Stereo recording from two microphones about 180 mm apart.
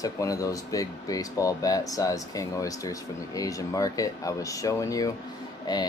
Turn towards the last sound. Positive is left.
turn(degrees=25)  # may be behind; listen again after turning